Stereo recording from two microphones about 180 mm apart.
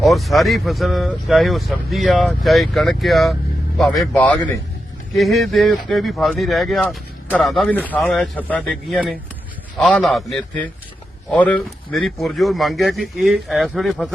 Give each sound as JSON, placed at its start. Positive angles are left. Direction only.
{"t": 0.0, "sound": "a man's voice", "side_deg": 0}